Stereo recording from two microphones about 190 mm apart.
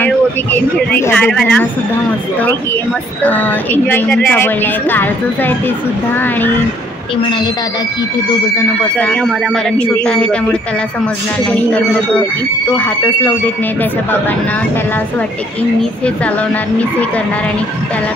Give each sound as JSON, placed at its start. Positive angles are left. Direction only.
{"t": 0.0, "sound": "speech", "side_deg": 10}
{"t": 3.3, "sound": "speech", "side_deg": 10}
{"t": 8.5, "sound": "speech", "side_deg": 10}
{"t": 11.7, "sound": "speech", "side_deg": 5}